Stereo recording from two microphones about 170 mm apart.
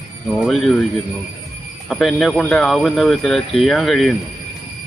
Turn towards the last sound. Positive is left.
turn(degrees=0)  # may be behind; listen again after turning